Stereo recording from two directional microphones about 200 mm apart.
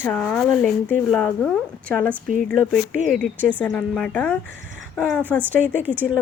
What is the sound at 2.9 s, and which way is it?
Speech, 40° right (ahead or behind).